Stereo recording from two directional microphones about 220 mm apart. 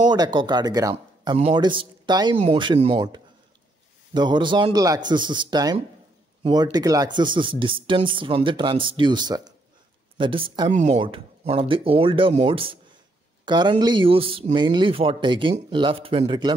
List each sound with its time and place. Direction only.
0.1 s speech: 20° right (ahead or behind)